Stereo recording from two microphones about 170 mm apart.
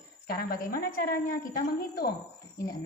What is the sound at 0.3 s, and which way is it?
A woman's voice, 60° left (ahead or behind).